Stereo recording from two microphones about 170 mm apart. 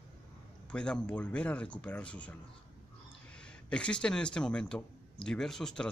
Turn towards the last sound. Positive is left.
turn(degrees=5)  # may be behind; listen again after turning